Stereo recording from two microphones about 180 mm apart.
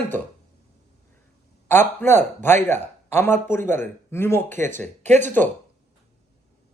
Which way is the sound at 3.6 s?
45° right (ahead or behind).